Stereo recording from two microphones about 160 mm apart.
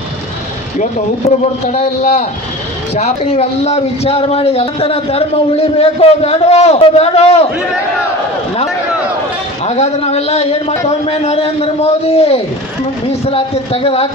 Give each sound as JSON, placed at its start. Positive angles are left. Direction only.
{"t": 0.7, "sound": "a man's voice", "side_deg": 45}
{"t": 9.7, "sound": "a man's voice", "side_deg": 40}